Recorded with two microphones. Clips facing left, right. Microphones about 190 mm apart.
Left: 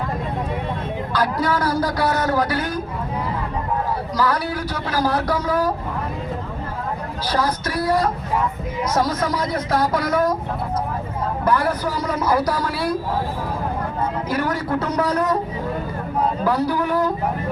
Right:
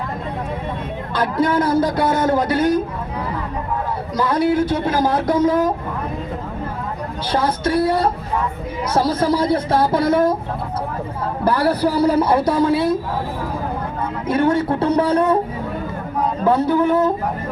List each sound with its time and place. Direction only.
1.1 s a man's voice: 25° right (ahead or behind)
4.2 s a man's voice: 25° right (ahead or behind)
7.3 s a man's voice: 25° right (ahead or behind)
11.4 s a man's voice: 35° right (ahead or behind)
14.3 s a man's voice: 25° right (ahead or behind)
16.4 s a man's voice: 25° right (ahead or behind)